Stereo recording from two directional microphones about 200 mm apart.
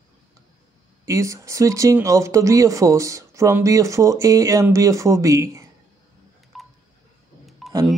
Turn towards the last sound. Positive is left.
turn(degrees=0)  # may be behind; listen again after turning